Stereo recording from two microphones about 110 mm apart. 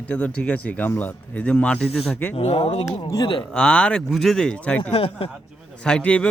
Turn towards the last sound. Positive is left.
turn(degrees=10)  # may be behind; listen again after turning